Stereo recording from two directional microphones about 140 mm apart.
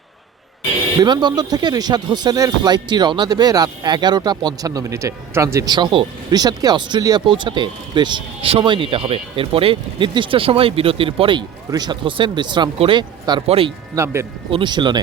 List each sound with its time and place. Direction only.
0.9 s speech: 30° right (ahead or behind)
13.5 s speech: 45° right (ahead or behind)
13.9 s speech: 20° right (ahead or behind)
14.5 s speech: 35° right (ahead or behind)